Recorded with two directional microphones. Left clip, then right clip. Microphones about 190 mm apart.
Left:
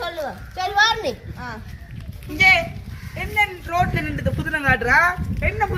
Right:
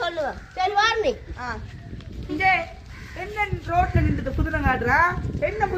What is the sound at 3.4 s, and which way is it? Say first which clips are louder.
A woman's voice: left 3 dB; 45° right (ahead or behind).